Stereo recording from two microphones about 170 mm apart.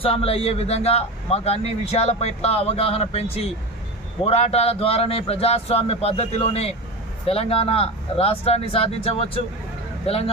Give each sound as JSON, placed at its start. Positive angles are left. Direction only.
{"t": 0.0, "sound": "speech", "side_deg": 35}